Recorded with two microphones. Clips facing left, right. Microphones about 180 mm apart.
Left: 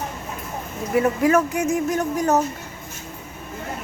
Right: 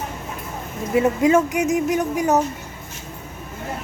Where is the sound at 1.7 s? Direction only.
15° right (ahead or behind).